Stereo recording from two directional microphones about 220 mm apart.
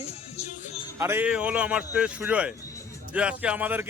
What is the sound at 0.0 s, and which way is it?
Music, 30° left (ahead or behind).